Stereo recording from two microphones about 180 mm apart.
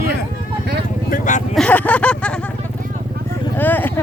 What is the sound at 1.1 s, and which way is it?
Speech, 45° left (ahead or behind).